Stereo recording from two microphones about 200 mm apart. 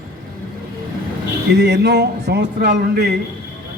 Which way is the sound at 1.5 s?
60° right (ahead or behind).